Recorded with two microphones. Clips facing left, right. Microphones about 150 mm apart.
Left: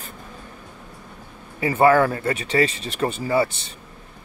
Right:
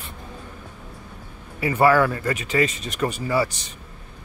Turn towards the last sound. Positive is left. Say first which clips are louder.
# left 2 dB
turn(degrees=25)  # may be behind; listen again after turning